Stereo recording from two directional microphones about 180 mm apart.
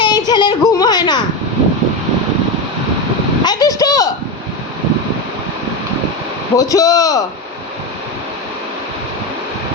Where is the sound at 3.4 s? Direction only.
20° left (ahead or behind).